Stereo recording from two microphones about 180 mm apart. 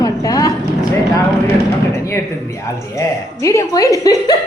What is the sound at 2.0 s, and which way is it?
A woman's voice, 15° left (ahead or behind).